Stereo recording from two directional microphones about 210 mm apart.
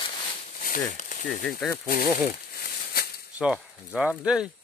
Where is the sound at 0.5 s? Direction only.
40° left (ahead or behind).